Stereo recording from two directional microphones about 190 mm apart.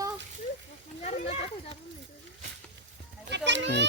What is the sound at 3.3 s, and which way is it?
Speech, 70° right (ahead or behind).